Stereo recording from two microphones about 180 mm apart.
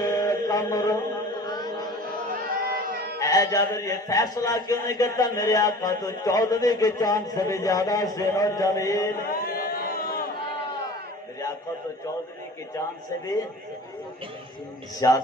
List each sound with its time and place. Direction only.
0.1 s chant: 20° left (ahead or behind)
2.5 s crowd: 55° right (ahead or behind)
3.2 s a man's voice: 20° left (ahead or behind)
9.3 s a sound: 55° left (ahead or behind)
15.0 s a man's voice: 20° left (ahead or behind)